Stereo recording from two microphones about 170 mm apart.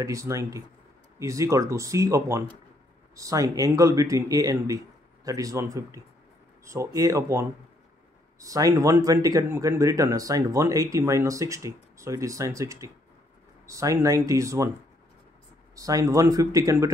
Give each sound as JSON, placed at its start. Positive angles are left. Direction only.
{"t": 0.0, "sound": "speech", "side_deg": -20}
{"t": 15.7, "sound": "speech", "side_deg": -20}